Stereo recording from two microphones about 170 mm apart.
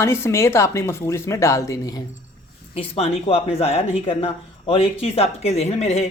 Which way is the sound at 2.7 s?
35° left (ahead or behind).